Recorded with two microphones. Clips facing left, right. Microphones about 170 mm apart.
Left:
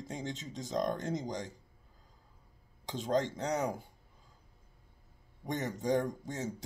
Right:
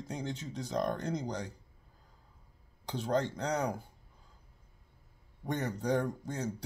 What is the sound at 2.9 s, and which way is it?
Speech, 20° left (ahead or behind).